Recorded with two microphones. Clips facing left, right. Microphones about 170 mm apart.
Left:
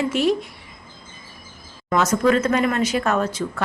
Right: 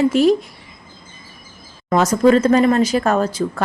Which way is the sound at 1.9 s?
35° right (ahead or behind).